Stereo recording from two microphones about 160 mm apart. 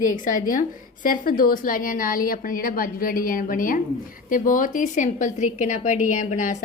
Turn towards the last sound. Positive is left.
turn(degrees=50)  # may be behind; listen again after turning